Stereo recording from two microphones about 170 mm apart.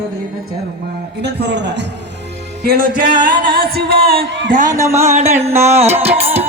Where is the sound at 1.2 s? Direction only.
90° right.